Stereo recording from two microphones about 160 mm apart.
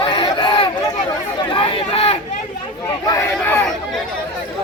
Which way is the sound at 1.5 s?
35° left (ahead or behind).